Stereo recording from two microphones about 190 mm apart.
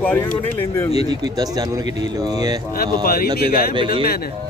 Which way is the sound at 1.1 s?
20° right (ahead or behind).